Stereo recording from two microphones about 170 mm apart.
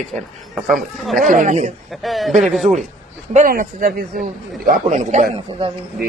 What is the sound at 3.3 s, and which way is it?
Speech, 50° right (ahead or behind).